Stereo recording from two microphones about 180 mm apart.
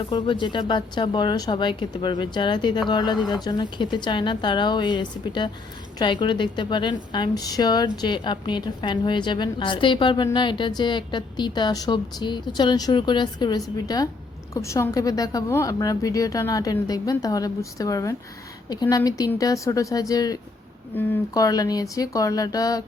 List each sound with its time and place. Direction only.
0.0 s a woman's voice: 25° left (ahead or behind)